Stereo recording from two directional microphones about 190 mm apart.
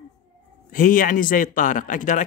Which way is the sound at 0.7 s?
45° left (ahead or behind).